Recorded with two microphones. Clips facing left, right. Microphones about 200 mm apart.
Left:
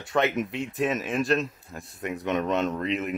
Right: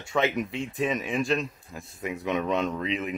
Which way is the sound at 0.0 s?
Centre (ahead or behind).